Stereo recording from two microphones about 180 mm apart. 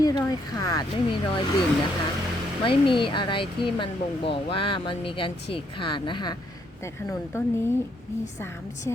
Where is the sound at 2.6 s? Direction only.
30° left (ahead or behind).